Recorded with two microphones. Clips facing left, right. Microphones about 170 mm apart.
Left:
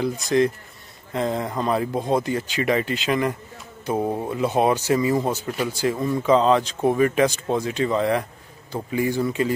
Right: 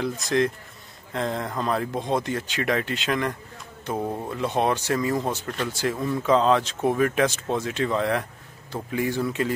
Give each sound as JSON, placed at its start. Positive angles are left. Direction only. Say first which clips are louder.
{"t": 0.2, "sound": "speech", "louder": "left 3 dB", "side_deg": 0}